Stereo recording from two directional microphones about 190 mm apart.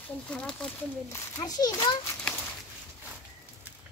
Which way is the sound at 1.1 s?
20° left (ahead or behind).